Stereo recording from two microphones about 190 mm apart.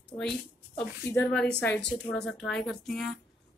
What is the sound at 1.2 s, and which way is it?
A woman's voice, 5° left (ahead or behind).